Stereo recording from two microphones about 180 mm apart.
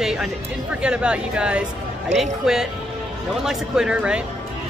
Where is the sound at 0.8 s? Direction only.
5° right (ahead or behind).